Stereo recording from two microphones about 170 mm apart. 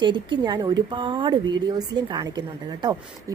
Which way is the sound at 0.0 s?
25° right (ahead or behind).